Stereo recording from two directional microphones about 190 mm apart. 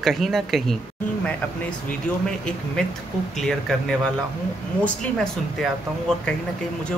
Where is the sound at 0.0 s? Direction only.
Centre (ahead or behind).